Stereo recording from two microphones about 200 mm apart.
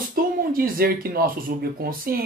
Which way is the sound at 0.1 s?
45° right (ahead or behind).